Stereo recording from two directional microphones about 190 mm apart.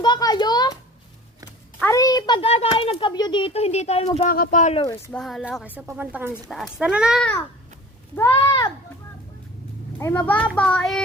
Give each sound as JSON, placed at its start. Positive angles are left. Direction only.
{"t": 0.0, "sound": "a sound", "side_deg": 20}
{"t": 1.8, "sound": "a child's voice", "side_deg": 15}
{"t": 4.3, "sound": "speech", "side_deg": 45}
{"t": 5.1, "sound": "speech", "side_deg": 5}
{"t": 5.7, "sound": "speech", "side_deg": -10}
{"t": 8.1, "sound": "speech", "side_deg": 15}
{"t": 10.0, "sound": "a child's voice", "side_deg": 10}